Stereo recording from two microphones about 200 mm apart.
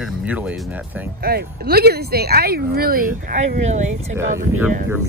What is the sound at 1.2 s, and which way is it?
Speech, 50° right (ahead or behind).